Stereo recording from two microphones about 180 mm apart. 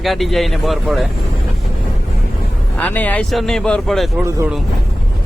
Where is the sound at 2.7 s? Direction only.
10° left (ahead or behind).